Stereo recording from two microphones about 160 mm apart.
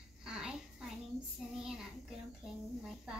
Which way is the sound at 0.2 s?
5° right (ahead or behind).